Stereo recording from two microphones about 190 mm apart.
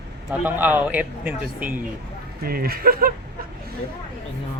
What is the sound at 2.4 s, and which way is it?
Speech, 55° right (ahead or behind).